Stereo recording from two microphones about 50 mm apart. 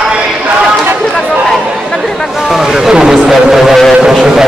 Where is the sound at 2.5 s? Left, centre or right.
Centre.